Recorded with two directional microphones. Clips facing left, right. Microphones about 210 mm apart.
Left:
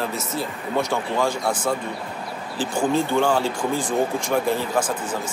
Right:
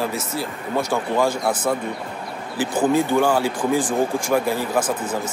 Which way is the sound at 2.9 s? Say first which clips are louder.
Right 2 dB; 5° right (ahead or behind).